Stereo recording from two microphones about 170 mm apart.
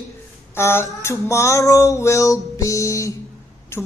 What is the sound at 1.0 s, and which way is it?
Music, 15° left (ahead or behind).